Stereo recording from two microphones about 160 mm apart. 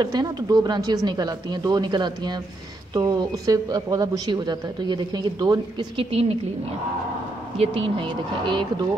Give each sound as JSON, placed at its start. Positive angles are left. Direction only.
{"t": 0.0, "sound": "a man's voice", "side_deg": -25}
{"t": 7.5, "sound": "speech", "side_deg": -35}